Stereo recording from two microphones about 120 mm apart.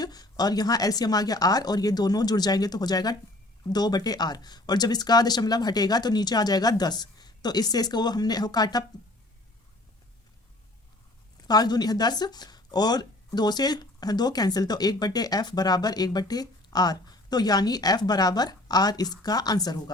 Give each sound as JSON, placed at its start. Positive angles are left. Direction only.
{"t": 0.0, "sound": "speech", "side_deg": 35}
{"t": 11.4, "sound": "speech", "side_deg": 35}